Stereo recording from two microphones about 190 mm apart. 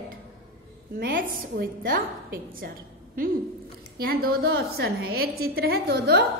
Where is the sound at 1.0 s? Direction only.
50° right (ahead or behind).